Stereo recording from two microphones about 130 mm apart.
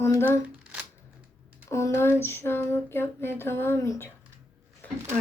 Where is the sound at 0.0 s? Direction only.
20° left (ahead or behind).